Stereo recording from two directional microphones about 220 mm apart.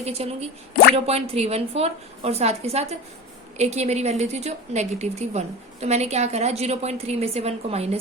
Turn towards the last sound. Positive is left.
turn(degrees=-30)  # may be behind; listen again after turning